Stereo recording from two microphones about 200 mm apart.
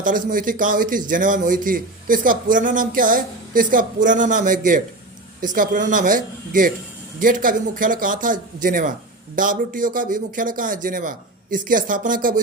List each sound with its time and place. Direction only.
0.0 s a man's voice: 45° right (ahead or behind)